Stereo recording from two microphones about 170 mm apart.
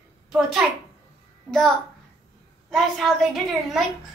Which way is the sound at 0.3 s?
Centre (ahead or behind).